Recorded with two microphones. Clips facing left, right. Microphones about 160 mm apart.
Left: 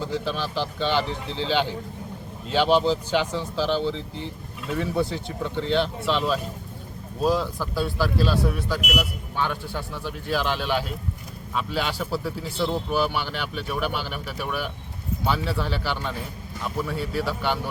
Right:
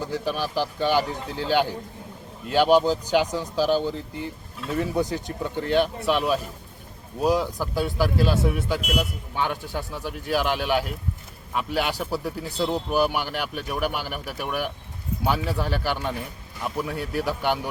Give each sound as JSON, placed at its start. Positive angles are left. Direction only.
{"t": 0.0, "sound": "speech", "side_deg": -10}